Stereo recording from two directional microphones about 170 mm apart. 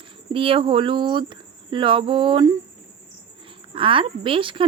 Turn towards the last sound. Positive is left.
turn(degrees=-30)  # may be behind; listen again after turning